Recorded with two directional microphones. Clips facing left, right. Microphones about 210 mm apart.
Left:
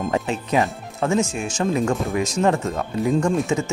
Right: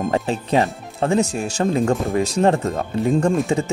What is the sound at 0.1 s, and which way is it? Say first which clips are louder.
Speech: right 2 dB; 35° right (ahead or behind).